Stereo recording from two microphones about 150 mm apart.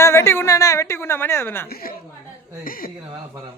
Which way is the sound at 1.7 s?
80° left.